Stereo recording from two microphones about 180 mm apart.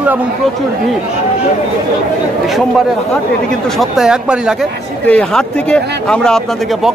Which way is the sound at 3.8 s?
5° right (ahead or behind).